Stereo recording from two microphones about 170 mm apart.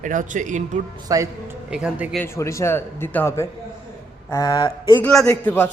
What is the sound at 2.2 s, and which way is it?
A woman's voice, 15° left (ahead or behind).